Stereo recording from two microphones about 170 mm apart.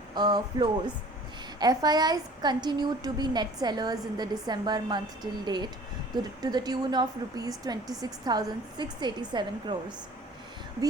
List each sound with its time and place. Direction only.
0.1 s a woman's voice: 25° right (ahead or behind)